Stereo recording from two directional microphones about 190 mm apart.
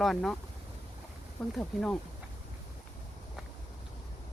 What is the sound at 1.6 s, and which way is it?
Speech, 5° left (ahead or behind).